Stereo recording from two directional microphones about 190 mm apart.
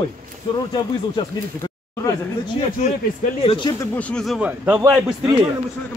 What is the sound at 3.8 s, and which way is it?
A man's voice, 10° left (ahead or behind).